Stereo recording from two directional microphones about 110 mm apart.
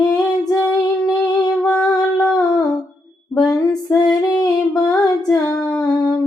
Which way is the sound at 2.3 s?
35° left (ahead or behind).